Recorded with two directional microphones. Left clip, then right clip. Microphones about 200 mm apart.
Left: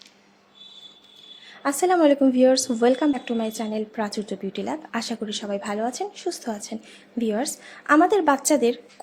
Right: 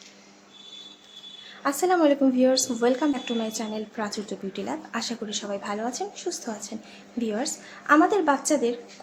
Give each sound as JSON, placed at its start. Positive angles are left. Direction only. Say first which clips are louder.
{"t": 1.6, "sound": "a woman's voice", "louder": "left 3 dB", "side_deg": 30}